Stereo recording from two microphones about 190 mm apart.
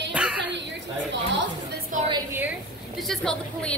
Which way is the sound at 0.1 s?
5° right (ahead or behind).